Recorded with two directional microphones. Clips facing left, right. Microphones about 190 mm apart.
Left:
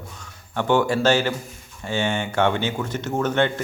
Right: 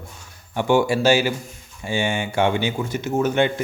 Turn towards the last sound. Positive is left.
turn(degrees=-10)  # may be behind; listen again after turning